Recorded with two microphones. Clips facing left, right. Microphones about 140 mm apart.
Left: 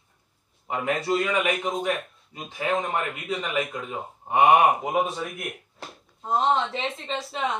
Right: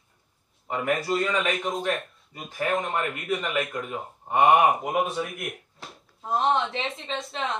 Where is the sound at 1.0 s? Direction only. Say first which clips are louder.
Left 1 dB; centre (ahead or behind).